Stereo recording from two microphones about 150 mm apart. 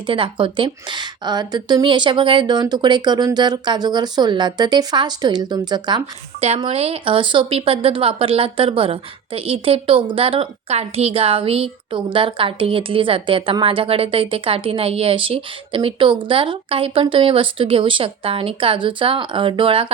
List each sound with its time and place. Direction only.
0.1 s a woman's voice: 35° right (ahead or behind)
6.4 s speech: 40° right (ahead or behind)